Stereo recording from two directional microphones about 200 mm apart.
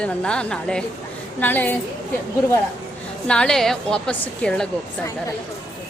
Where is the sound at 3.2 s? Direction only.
5° left (ahead or behind).